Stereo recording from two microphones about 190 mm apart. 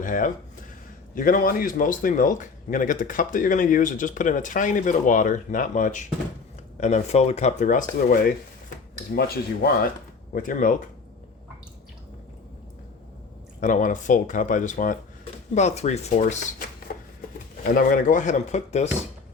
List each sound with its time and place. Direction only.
0.0 s a man's voice: 45° left (ahead or behind)
13.6 s speech: 40° left (ahead or behind)
16.9 s a sound: 50° left (ahead or behind)
17.7 s speech: 45° left (ahead or behind)